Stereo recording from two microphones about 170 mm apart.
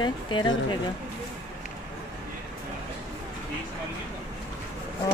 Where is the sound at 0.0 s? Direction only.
25° left (ahead or behind).